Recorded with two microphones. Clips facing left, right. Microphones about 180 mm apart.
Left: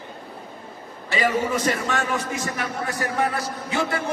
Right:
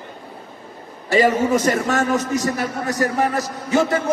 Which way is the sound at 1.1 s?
45° right (ahead or behind).